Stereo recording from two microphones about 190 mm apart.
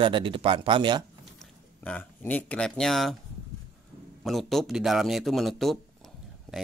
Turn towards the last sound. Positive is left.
turn(degrees=0)  # may be behind; listen again after turning